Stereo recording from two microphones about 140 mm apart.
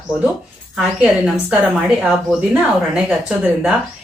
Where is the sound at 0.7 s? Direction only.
Centre (ahead or behind).